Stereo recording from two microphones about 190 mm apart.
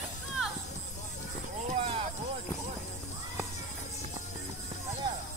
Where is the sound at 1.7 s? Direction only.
30° right (ahead or behind).